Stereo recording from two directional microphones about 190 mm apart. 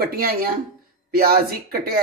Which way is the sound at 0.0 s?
50° right (ahead or behind).